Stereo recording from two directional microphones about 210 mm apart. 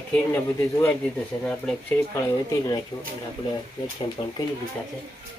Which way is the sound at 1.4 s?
10° left (ahead or behind).